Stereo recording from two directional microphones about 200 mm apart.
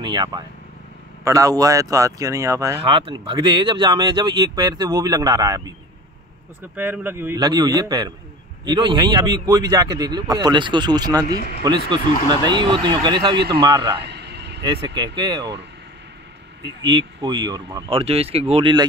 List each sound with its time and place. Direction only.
0.0 s speech: 20° right (ahead or behind)
6.7 s speech: 10° right (ahead or behind)
13.9 s a sound: 55° right (ahead or behind)
14.6 s speech: 25° right (ahead or behind)
16.8 s speech: 20° right (ahead or behind)